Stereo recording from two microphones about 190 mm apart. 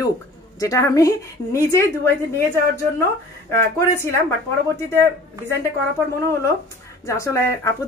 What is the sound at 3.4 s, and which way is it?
Speech, 15° left (ahead or behind).